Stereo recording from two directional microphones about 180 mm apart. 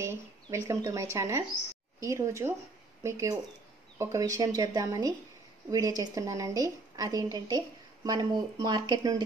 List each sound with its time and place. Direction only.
0.0 s a woman's voice: 15° right (ahead or behind)